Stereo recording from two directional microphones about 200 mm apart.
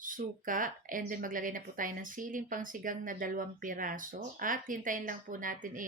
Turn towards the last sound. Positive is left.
turn(degrees=-45)  # may be behind; listen again after turning